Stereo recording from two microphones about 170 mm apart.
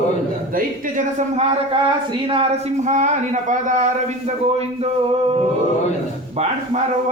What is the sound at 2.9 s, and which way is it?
Speech, 45° right (ahead or behind).